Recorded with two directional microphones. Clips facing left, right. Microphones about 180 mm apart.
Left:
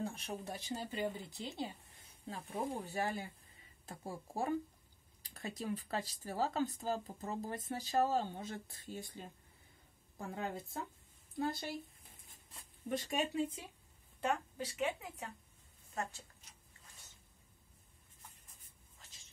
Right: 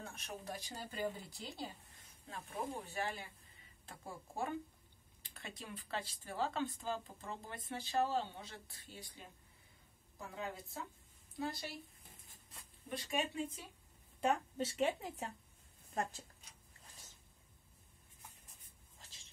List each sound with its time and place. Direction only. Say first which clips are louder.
0.0 s speech: left 6 dB; 30° left (ahead or behind)
2.2 s speech: left 3 dB; 35° left (ahead or behind)
10.1 s a woman's voice: left 4 dB; 55° left (ahead or behind)
12.9 s speech: left 3 dB; 40° left (ahead or behind)
14.2 s speech: right 2 dB; 20° right (ahead or behind)